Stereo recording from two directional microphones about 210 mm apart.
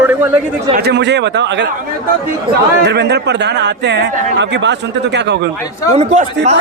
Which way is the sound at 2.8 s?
55° right (ahead or behind).